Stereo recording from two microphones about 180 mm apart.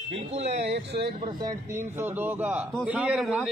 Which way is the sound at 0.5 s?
70° right (ahead or behind).